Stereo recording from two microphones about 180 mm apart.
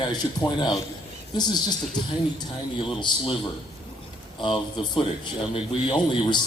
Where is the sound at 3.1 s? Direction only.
25° left (ahead or behind).